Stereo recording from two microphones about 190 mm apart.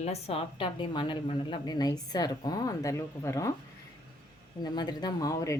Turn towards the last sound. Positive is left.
turn(degrees=15)  # may be behind; listen again after turning